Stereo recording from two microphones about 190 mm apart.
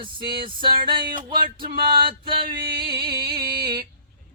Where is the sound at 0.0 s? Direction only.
25° right (ahead or behind).